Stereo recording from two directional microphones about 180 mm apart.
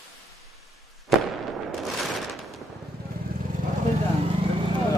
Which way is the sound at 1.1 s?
Centre (ahead or behind).